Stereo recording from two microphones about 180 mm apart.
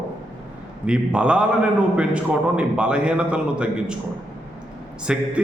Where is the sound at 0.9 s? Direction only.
5° right (ahead or behind).